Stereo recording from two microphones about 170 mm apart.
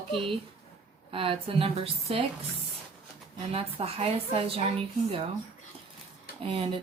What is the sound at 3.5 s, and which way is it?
A woman's voice, 35° right (ahead or behind).